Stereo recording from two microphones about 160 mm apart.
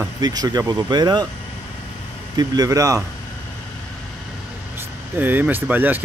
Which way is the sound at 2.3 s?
25° right (ahead or behind).